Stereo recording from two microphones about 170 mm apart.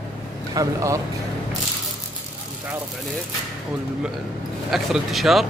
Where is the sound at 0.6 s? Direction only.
20° right (ahead or behind).